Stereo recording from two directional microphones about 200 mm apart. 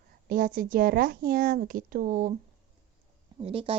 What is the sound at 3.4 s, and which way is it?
Speech, 25° right (ahead or behind).